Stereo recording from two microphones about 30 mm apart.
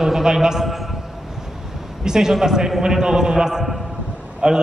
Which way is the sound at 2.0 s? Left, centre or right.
Centre.